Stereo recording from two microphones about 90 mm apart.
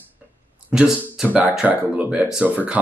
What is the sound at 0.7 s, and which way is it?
Speech, 10° right (ahead or behind).